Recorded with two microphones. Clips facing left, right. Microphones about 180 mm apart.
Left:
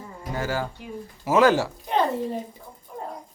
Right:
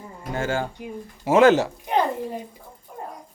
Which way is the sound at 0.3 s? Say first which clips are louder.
Right 2 dB; 25° right (ahead or behind).